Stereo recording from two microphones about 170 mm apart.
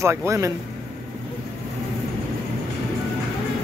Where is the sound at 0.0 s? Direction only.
15° right (ahead or behind).